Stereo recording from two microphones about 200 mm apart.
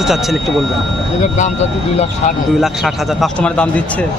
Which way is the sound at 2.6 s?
Centre (ahead or behind).